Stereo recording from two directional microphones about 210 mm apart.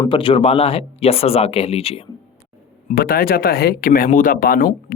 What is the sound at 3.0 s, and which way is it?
Speech, 45° left (ahead or behind).